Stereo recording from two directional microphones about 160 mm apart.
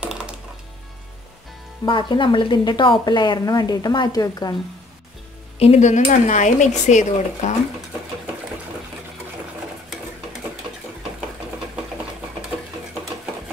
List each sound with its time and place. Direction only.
0.0 s music: 5° right (ahead or behind)
1.9 s speech: 30° left (ahead or behind)
5.6 s speech: 45° left (ahead or behind)